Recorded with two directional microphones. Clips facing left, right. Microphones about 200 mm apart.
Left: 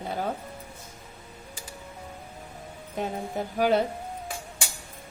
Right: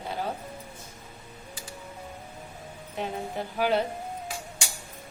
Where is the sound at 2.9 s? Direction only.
45° left (ahead or behind).